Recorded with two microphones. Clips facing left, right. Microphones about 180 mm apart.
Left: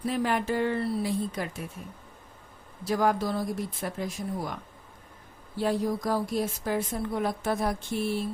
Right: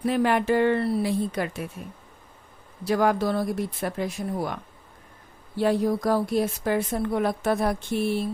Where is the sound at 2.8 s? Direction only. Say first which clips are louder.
Right 4 dB; 70° right (ahead or behind).